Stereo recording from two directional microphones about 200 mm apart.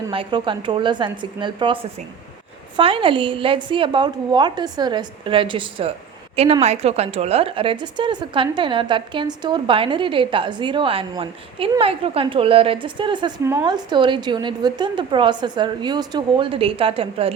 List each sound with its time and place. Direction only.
0.1 s a woman's voice: 25° right (ahead or behind)